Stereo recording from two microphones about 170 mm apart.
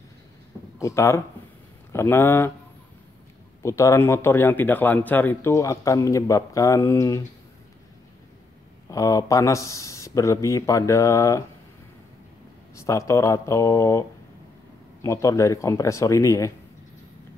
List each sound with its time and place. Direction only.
0.7 s speech: 15° left (ahead or behind)
3.6 s speech: 15° left (ahead or behind)
8.9 s speech: 20° left (ahead or behind)
12.7 s speech: 15° left (ahead or behind)